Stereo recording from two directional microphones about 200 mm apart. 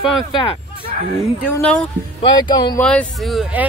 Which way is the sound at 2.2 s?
20° left (ahead or behind).